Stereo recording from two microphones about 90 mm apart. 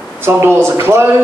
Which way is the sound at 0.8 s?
25° right (ahead or behind).